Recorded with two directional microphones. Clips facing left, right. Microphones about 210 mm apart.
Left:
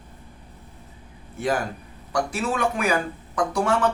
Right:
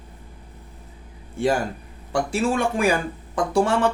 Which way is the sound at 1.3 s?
25° right (ahead or behind).